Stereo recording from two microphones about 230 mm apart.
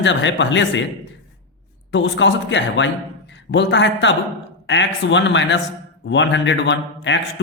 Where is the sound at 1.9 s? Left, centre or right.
Left.